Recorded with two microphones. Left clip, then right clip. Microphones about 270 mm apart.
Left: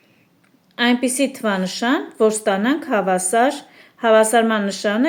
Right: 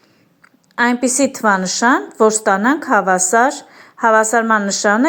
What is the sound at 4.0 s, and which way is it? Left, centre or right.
Speech, centre.